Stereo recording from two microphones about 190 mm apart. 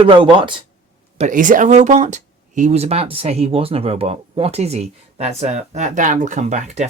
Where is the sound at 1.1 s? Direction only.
40° right (ahead or behind).